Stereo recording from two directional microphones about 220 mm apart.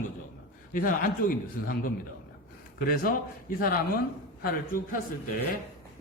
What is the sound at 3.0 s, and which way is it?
Speech, 40° left (ahead or behind).